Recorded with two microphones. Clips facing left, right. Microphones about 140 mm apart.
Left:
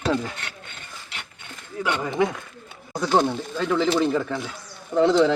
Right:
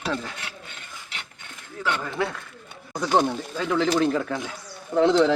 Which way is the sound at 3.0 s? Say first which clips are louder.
Left 1 dB; 10° right (ahead or behind).